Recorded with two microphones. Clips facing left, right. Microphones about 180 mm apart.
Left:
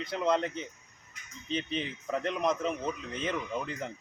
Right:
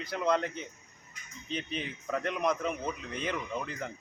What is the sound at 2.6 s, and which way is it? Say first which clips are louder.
Speech: left 1 dB; centre (ahead or behind).